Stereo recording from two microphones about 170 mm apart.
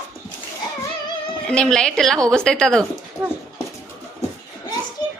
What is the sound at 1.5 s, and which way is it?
A woman's voice, 5° left (ahead or behind).